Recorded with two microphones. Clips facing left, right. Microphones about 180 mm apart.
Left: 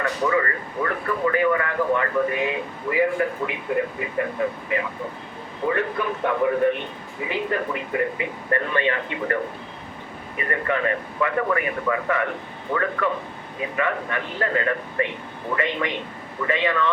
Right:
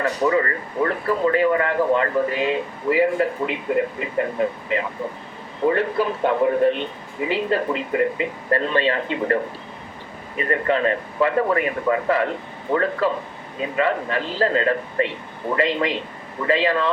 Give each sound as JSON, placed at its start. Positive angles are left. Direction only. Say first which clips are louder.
{"t": 0.0, "sound": "speech", "louder": "right 3 dB", "side_deg": -30}